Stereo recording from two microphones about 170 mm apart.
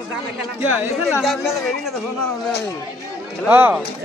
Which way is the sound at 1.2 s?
Centre (ahead or behind).